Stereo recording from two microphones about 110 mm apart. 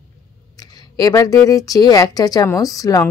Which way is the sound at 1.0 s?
30° left (ahead or behind).